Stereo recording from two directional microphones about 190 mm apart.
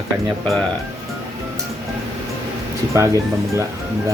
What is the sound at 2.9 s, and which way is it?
Speech, 15° right (ahead or behind).